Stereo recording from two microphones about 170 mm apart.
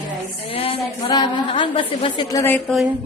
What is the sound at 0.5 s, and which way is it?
A woman's voice, 30° left (ahead or behind).